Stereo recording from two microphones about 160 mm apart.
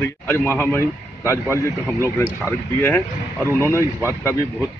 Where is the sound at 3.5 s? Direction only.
15° left (ahead or behind).